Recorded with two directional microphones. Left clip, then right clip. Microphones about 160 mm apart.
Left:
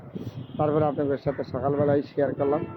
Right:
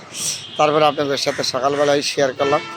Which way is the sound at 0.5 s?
30° right (ahead or behind).